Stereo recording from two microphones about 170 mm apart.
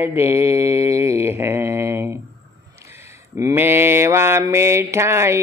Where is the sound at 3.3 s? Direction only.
15° right (ahead or behind).